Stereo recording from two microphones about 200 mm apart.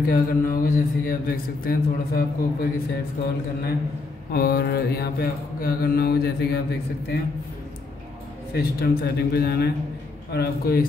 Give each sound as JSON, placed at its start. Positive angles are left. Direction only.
{"t": 0.1, "sound": "mantra", "side_deg": 50}
{"t": 4.3, "sound": "mantra", "side_deg": 50}
{"t": 8.5, "sound": "mantra", "side_deg": 50}